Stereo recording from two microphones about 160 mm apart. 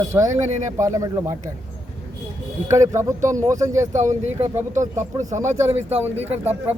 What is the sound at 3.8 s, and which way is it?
Speech, 50° right (ahead or behind).